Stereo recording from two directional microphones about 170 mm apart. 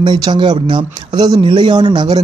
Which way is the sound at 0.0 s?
25° right (ahead or behind).